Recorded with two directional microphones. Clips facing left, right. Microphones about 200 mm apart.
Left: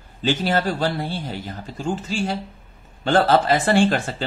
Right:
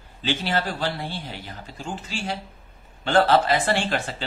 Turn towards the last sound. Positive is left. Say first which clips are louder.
# left 8 dB
turn(degrees=45)  # may be behind; listen again after turning